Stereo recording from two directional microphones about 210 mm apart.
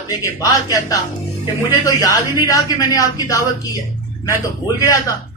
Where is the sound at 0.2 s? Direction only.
15° left (ahead or behind).